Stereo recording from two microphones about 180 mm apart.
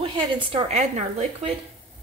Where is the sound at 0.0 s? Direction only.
25° right (ahead or behind).